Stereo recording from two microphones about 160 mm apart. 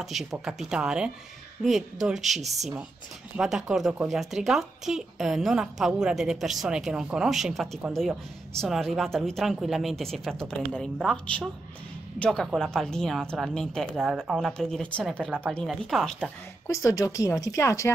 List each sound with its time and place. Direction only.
0.0 s speech: centre (ahead or behind)
16.6 s speech: 20° left (ahead or behind)